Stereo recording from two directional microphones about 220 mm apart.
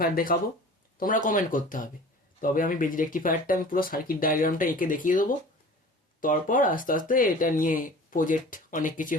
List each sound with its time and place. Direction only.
0.0 s speech: 40° left (ahead or behind)